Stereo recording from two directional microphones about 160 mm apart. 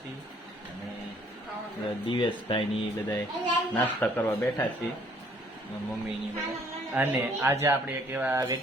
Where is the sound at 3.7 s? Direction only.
10° left (ahead or behind).